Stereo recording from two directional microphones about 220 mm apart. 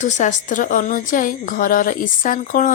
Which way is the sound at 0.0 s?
35° left (ahead or behind).